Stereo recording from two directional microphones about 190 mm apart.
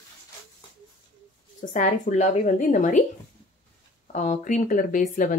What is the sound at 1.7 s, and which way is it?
A woman's voice, 45° left (ahead or behind).